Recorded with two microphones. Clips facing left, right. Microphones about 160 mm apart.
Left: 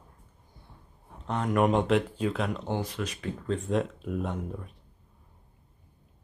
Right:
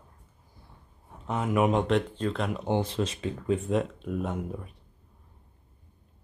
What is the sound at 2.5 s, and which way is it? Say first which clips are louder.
Speech: right 4 dB; 20° right (ahead or behind).